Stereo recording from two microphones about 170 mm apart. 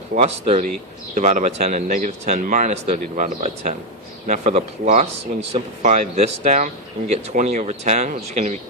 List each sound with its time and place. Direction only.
0.1 s speech: 40° right (ahead or behind)